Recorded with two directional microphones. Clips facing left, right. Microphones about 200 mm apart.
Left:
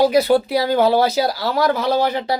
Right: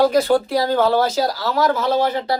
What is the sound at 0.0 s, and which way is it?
Speech, 10° left (ahead or behind).